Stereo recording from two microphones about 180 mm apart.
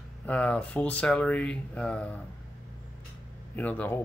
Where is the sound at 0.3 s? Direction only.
5° left (ahead or behind).